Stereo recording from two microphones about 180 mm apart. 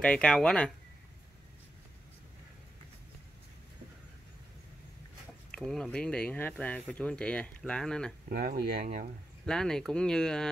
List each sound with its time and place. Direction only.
0.0 s speech: 5° left (ahead or behind)
5.5 s speech: 5° left (ahead or behind)
8.3 s speech: 55° right (ahead or behind)
9.5 s speech: 5° left (ahead or behind)